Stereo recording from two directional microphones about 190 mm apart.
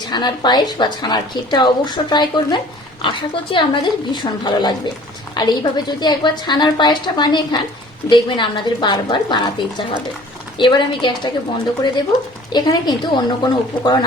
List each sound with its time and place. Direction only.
0.0 s a woman's voice: 25° left (ahead or behind)
12.5 s a woman's voice: 20° left (ahead or behind)